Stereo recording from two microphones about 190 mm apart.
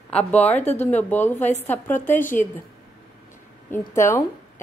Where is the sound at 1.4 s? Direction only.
35° left (ahead or behind).